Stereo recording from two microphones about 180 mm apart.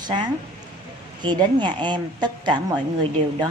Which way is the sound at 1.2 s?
25° right (ahead or behind).